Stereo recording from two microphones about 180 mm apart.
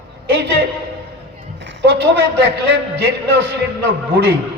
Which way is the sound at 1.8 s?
70° right (ahead or behind).